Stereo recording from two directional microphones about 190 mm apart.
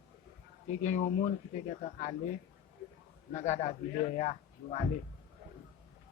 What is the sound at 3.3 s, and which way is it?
A man's voice, 40° left (ahead or behind).